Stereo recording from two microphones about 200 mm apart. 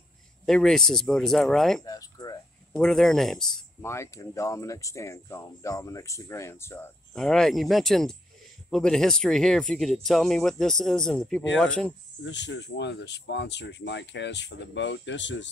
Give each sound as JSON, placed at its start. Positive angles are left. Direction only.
{"t": 0.5, "sound": "speech", "side_deg": 0}
{"t": 1.8, "sound": "speech", "side_deg": 20}
{"t": 2.7, "sound": "speech", "side_deg": 0}
{"t": 3.9, "sound": "speech", "side_deg": 15}
{"t": 12.3, "sound": "speech", "side_deg": 60}